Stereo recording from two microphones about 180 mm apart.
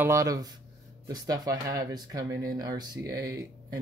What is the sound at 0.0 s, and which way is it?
Speech, 15° right (ahead or behind).